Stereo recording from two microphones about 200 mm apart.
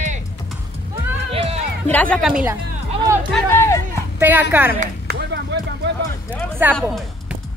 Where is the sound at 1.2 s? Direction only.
30° right (ahead or behind).